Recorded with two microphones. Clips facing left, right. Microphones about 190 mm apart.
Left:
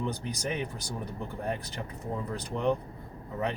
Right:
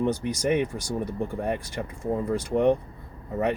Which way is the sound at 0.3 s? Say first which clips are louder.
Right 9 dB; 80° right.